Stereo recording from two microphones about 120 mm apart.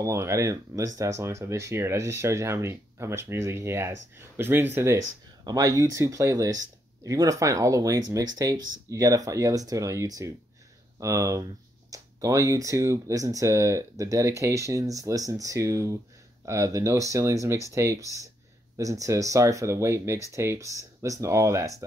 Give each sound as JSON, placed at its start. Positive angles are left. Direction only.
{"t": 0.0, "sound": "speech", "side_deg": -25}
{"t": 5.4, "sound": "speech", "side_deg": -30}